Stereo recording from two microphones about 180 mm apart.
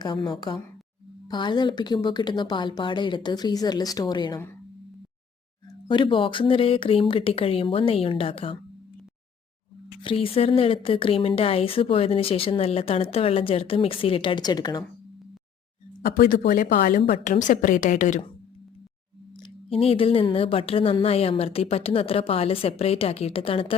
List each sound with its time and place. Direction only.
0.0 s speech: 25° left (ahead or behind)
5.9 s speech: 25° left (ahead or behind)
10.0 s speech: 30° left (ahead or behind)
16.0 s a woman's voice: 55° left (ahead or behind)
17.0 s a woman's voice: 40° left (ahead or behind)
19.7 s speech: 30° left (ahead or behind)